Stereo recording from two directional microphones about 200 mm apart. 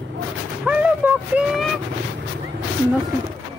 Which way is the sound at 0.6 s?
5° right (ahead or behind).